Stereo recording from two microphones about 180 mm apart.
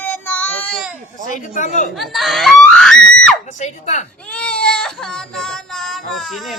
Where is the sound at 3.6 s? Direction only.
40° left (ahead or behind).